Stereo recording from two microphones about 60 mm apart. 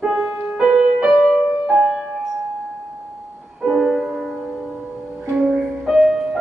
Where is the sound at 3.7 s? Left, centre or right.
Centre.